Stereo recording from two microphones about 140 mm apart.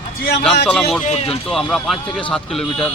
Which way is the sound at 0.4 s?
Centre (ahead or behind).